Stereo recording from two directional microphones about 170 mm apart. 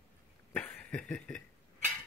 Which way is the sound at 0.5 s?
10° left (ahead or behind).